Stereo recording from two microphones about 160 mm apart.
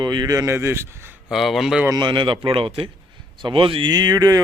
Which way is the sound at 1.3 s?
Centre (ahead or behind).